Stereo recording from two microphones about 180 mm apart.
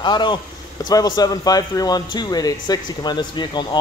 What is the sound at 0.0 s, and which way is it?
Speech, 25° left (ahead or behind).